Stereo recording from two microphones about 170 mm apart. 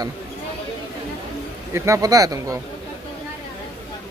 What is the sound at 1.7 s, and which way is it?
Speech, 15° right (ahead or behind).